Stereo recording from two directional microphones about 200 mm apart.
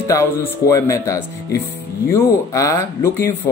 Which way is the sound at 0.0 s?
15° left (ahead or behind).